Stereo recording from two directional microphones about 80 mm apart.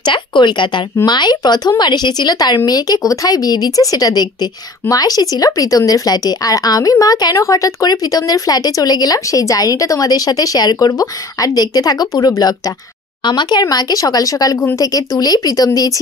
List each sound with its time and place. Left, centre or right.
0.0 s speech: left
1.0 s a woman's voice: left
13.2 s a woman's voice: left